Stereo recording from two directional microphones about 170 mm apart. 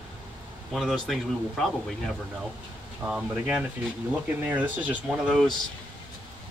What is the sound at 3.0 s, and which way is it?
Speech, 5° right (ahead or behind).